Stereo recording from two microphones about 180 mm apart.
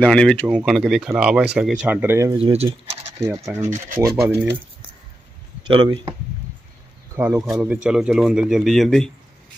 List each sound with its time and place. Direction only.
0.0 s speech: 5° left (ahead or behind); by 2.3 s 15° right (ahead or behind)
2.3 s speech: 35° right (ahead or behind)
4.0 s speech: 15° right (ahead or behind)
5.6 s speech: 25° right (ahead or behind)
7.2 s speech: 5° right (ahead or behind)